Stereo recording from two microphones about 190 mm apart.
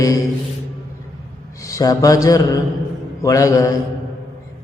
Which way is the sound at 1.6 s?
15° left (ahead or behind).